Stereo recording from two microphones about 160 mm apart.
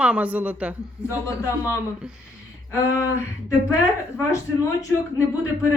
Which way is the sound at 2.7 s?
15° left (ahead or behind).